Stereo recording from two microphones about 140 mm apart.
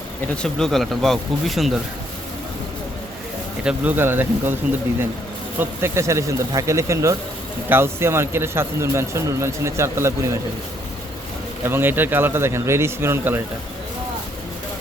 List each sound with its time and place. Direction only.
0.4 s speech: centre (ahead or behind)
3.6 s speech: 10° right (ahead or behind)
5.5 s a man's voice: 20° right (ahead or behind)
11.6 s speech: 15° right (ahead or behind)